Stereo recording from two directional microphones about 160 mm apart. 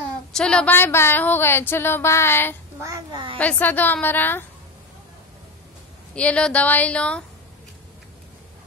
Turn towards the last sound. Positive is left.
turn(degrees=5)  # may be behind; listen again after turning